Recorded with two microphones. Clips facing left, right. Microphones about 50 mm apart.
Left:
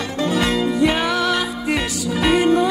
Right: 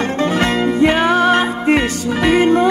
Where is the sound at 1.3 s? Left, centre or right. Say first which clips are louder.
Right 7 dB; right.